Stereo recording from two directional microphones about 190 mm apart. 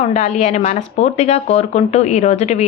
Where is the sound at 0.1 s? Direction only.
35° left (ahead or behind).